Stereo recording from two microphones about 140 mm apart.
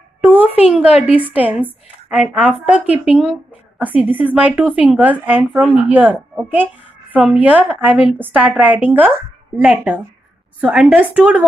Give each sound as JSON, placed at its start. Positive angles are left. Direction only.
{"t": 0.2, "sound": "a sound", "side_deg": -10}
{"t": 0.8, "sound": "a woman's voice", "side_deg": 45}
{"t": 1.1, "sound": "speech", "side_deg": -10}